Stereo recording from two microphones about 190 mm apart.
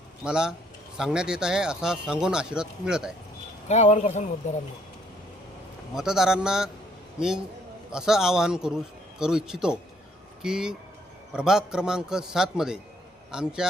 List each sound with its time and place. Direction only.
0.3 s speech: 5° right (ahead or behind)
3.7 s speech: 40° left (ahead or behind)
5.9 s speech: centre (ahead or behind)